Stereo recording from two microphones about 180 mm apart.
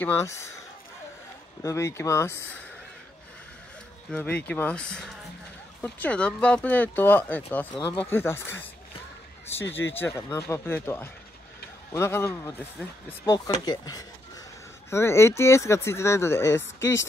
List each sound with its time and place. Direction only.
0.0 s speech: 15° left (ahead or behind)
1.6 s speech: 15° left (ahead or behind)
4.1 s speech: 10° left (ahead or behind)